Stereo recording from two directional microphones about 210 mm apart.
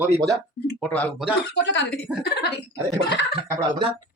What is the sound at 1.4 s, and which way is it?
Speech, 55° left (ahead or behind).